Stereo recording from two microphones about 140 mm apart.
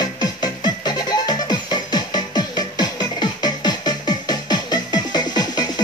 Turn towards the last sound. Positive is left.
turn(degrees=30)  # may be behind; listen again after turning